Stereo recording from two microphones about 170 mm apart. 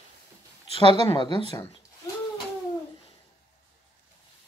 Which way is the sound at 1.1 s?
30° left (ahead or behind).